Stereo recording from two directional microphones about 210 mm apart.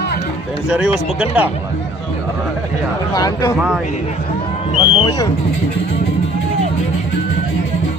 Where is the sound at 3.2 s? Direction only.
15° left (ahead or behind).